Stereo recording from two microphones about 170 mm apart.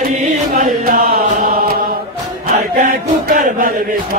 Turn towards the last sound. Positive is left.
turn(degrees=-55)  # may be behind; listen again after turning